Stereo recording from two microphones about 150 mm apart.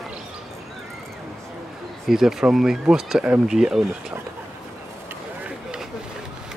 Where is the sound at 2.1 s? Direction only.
Centre (ahead or behind).